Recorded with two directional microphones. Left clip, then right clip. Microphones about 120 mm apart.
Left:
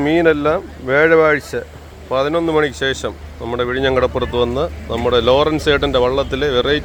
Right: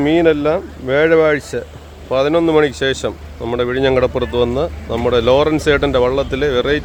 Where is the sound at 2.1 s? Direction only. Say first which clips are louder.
Right 3 dB; 45° right (ahead or behind).